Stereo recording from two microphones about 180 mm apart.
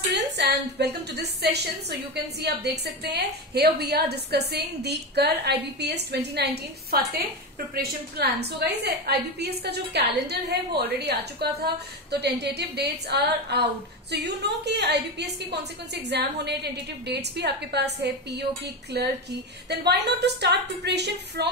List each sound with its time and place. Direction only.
0.1 s a woman's voice: 70° right (ahead or behind)